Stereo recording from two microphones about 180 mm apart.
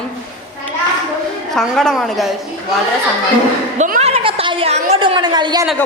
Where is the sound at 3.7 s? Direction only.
45° right (ahead or behind); by 5.6 s 25° right (ahead or behind).